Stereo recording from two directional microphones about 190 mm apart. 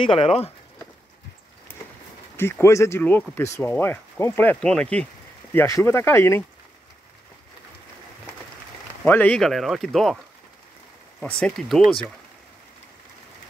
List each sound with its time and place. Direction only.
0.0 s speech: 30° left (ahead or behind)
2.3 s speech: 10° left (ahead or behind)
9.0 s speech: 10° left (ahead or behind)
11.1 s speech: 5° left (ahead or behind)